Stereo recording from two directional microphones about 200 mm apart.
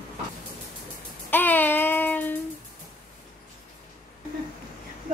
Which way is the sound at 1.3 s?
10° left (ahead or behind).